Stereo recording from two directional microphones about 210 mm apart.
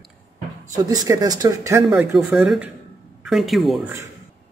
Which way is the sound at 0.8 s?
15° right (ahead or behind).